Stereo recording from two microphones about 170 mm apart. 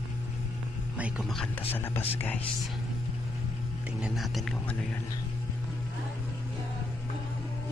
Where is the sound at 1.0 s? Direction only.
5° right (ahead or behind); by 2.4 s 10° left (ahead or behind).